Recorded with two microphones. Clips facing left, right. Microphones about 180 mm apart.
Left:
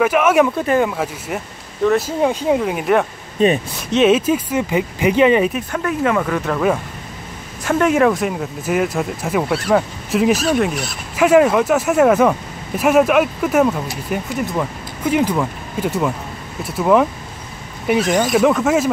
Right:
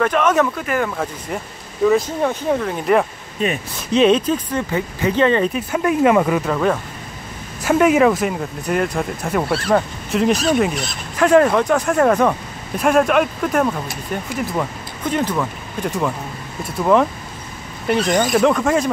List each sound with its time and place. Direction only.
0.0 s speech: 10° left (ahead or behind)
0.6 s speech: 25° left (ahead or behind)
0.8 s speech: 5° left (ahead or behind)
3.9 s speech: 5° left (ahead or behind)
5.7 s speech: 15° right (ahead or behind)
6.4 s speech: centre (ahead or behind)
9.5 s speech: 15° left (ahead or behind)
9.8 s speech: 5° left (ahead or behind)